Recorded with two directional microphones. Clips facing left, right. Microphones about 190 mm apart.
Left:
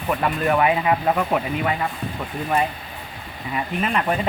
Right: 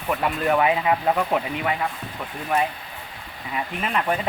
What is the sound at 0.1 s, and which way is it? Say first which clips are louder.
Speech: left 2 dB; centre (ahead or behind).